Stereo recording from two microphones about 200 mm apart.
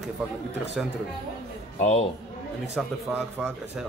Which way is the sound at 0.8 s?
Centre (ahead or behind).